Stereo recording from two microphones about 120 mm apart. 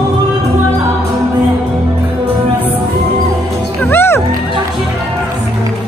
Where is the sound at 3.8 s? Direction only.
20° left (ahead or behind).